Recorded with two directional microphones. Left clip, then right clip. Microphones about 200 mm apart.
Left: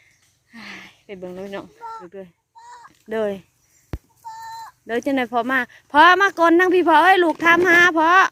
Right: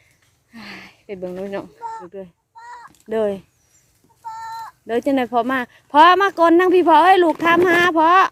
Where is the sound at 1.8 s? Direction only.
40° left (ahead or behind).